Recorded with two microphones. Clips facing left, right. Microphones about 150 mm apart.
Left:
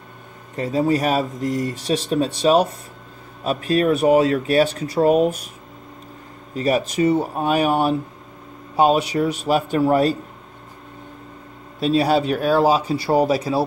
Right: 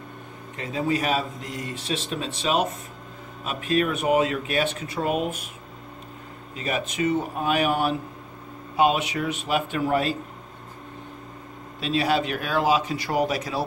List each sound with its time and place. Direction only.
0.6 s speech: 40° left (ahead or behind)
6.5 s speech: 40° left (ahead or behind)
11.8 s speech: 35° left (ahead or behind)